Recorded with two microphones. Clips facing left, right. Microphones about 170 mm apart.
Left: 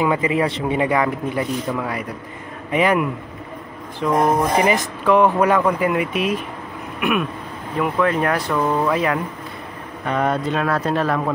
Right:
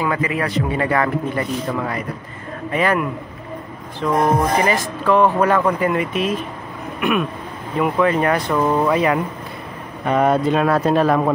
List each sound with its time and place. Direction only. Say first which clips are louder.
0.0 s a man's voice: left 2 dB; 20° left (ahead or behind)
0.7 s speech: even; 15° left (ahead or behind)
7.0 s a sound: right 1 dB; 5° left (ahead or behind)
7.8 s speech: right 2 dB; 5° right (ahead or behind)